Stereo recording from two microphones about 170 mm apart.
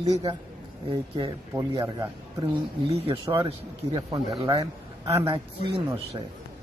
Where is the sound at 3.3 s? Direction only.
30° right (ahead or behind).